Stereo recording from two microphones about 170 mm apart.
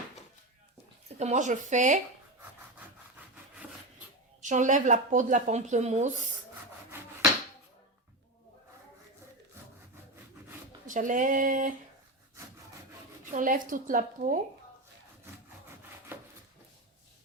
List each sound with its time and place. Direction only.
1.0 s speech: 40° right (ahead or behind)
4.4 s speech: 45° right (ahead or behind)
6.9 s a sound: 10° right (ahead or behind)
10.8 s speech: 50° right (ahead or behind)
13.3 s speech: 50° right (ahead or behind)